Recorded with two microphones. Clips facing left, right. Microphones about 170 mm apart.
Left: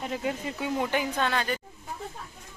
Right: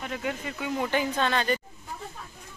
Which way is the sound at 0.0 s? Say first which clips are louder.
Left 2 dB; 30° left (ahead or behind).